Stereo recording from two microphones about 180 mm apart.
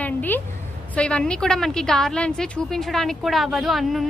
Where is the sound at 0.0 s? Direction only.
10° left (ahead or behind).